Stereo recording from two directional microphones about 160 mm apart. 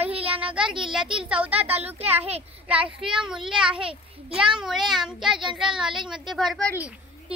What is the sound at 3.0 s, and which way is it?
A woman's voice, 5° right (ahead or behind).